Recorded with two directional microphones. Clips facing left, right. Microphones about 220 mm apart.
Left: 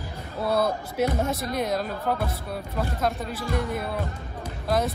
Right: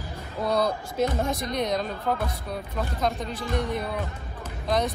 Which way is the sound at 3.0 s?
Centre (ahead or behind).